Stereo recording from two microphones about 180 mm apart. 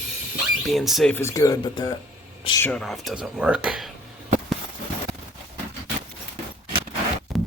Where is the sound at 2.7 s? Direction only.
Centre (ahead or behind).